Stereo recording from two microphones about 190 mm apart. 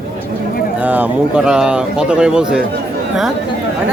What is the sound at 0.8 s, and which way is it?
Speech, 5° right (ahead or behind).